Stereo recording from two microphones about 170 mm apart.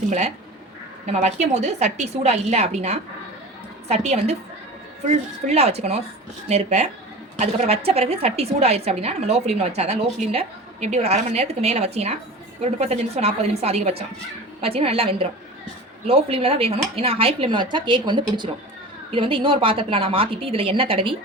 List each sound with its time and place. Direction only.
0.1 s a woman's voice: 45° right (ahead or behind)